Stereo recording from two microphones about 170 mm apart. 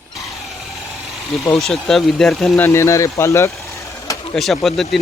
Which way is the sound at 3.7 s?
20° left (ahead or behind).